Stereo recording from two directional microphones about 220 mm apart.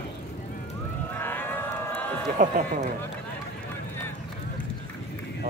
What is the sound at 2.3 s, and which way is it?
Speech, 40° right (ahead or behind).